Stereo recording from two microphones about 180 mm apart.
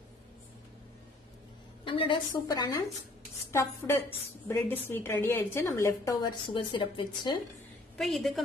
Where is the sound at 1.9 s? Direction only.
25° left (ahead or behind).